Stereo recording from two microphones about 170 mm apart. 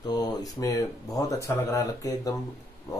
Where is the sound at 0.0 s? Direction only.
20° left (ahead or behind).